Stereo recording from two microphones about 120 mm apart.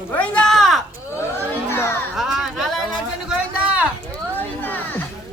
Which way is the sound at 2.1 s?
5° right (ahead or behind).